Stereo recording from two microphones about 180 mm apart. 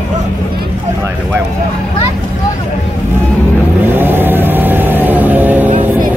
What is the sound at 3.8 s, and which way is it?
Vehicle, 10° right (ahead or behind).